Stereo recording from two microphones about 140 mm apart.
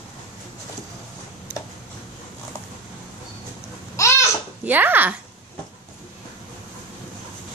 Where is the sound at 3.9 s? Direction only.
20° left (ahead or behind).